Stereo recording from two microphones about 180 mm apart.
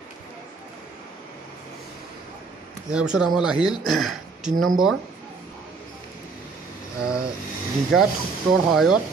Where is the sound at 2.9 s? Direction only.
5° right (ahead or behind).